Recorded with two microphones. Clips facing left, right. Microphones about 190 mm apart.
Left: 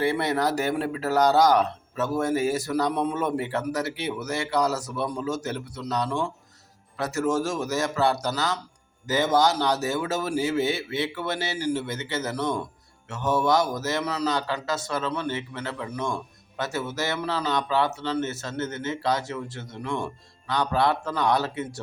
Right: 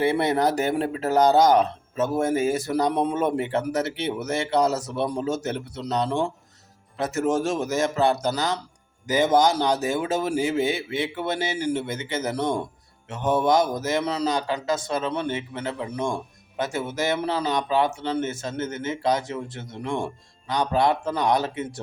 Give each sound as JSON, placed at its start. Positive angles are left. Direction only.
{"t": 0.0, "sound": "speech", "side_deg": -20}